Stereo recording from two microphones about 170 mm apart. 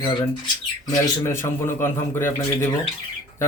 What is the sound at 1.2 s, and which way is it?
Speech, 15° left (ahead or behind).